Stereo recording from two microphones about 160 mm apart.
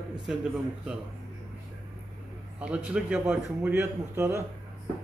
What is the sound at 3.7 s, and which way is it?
Speech, 15° right (ahead or behind).